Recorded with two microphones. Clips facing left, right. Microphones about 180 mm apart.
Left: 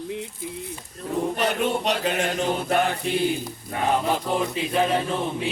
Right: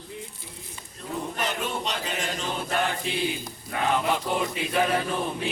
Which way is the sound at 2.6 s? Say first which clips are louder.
Left 5 dB; 60° left (ahead or behind).